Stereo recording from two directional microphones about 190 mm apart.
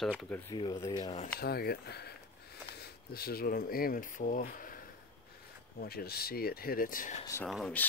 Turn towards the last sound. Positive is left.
turn(degrees=5)  # may be behind; listen again after turning